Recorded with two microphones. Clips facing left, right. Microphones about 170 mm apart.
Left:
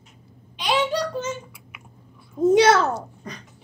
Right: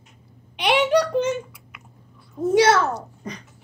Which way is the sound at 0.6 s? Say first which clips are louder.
Right 4 dB; 65° right (ahead or behind).